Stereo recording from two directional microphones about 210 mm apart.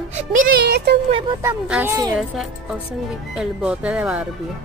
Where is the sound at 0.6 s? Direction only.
50° right (ahead or behind).